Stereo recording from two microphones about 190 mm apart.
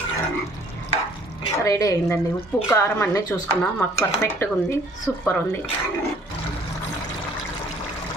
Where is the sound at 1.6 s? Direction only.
15° left (ahead or behind).